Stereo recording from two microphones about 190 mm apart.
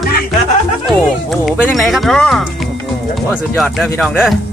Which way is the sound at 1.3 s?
Centre (ahead or behind).